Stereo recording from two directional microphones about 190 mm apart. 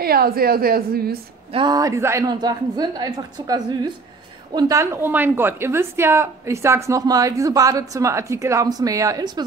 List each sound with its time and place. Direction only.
0.0 s a woman's voice: 50° right (ahead or behind)
1.5 s a woman's voice: 25° right (ahead or behind)